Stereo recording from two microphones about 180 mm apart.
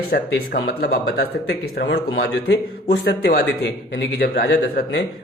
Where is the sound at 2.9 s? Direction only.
65° left (ahead or behind).